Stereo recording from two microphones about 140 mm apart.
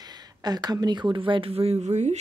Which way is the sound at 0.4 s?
30° right (ahead or behind).